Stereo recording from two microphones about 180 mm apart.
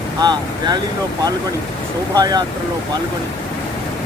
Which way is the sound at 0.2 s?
20° right (ahead or behind).